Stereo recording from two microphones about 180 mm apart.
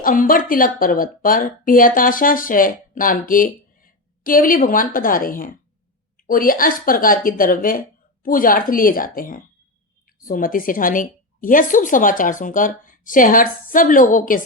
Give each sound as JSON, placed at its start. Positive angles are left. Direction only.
{"t": 0.0, "sound": "speech", "side_deg": 50}